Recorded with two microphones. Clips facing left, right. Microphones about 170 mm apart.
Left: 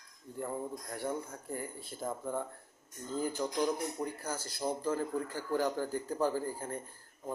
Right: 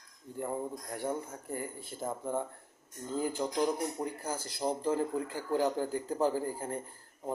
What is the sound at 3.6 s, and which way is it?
Speech, 15° right (ahead or behind).